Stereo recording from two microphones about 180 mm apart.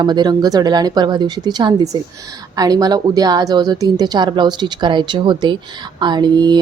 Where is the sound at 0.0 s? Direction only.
25° right (ahead or behind).